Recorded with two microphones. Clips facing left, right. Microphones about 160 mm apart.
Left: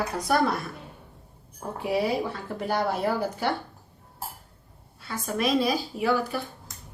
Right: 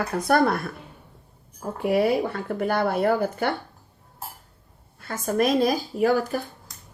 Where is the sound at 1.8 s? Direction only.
55° right (ahead or behind).